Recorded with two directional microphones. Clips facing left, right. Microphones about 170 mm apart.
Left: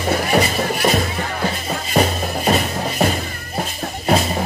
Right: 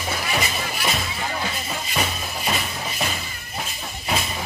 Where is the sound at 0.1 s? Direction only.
45° left (ahead or behind).